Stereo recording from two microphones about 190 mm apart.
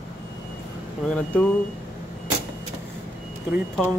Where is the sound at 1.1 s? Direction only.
5° left (ahead or behind).